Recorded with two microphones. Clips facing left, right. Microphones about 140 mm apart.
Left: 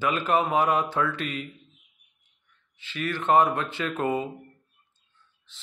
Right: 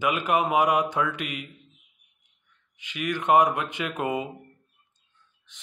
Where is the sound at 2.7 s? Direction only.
15° right (ahead or behind).